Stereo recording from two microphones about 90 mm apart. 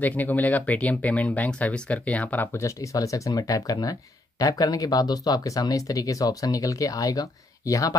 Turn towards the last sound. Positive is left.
turn(degrees=40)  # may be behind; listen again after turning